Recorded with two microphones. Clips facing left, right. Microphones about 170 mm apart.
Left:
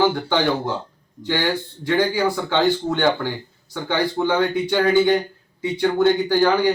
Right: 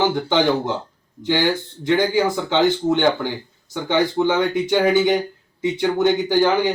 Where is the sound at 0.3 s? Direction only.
20° right (ahead or behind).